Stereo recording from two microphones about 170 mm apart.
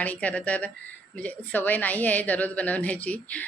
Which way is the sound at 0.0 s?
10° left (ahead or behind).